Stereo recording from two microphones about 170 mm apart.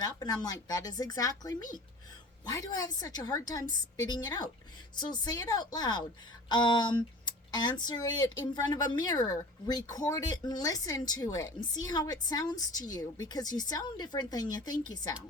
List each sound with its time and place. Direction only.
0.0 s speech: 20° left (ahead or behind)